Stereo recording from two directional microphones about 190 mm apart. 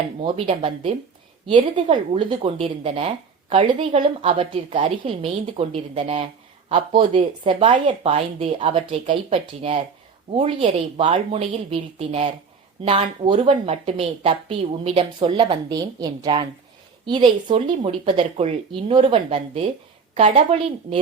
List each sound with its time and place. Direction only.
0.2 s a woman's voice: 30° right (ahead or behind)